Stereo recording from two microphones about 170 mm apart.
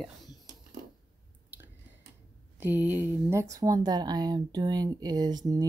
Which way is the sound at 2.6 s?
10° right (ahead or behind).